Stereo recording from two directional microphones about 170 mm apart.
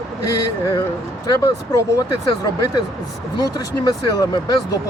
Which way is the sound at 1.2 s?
20° left (ahead or behind).